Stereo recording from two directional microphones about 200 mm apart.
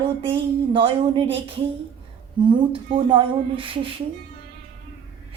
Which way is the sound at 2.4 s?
25° right (ahead or behind).